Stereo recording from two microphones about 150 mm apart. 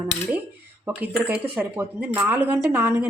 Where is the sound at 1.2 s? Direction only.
10° right (ahead or behind).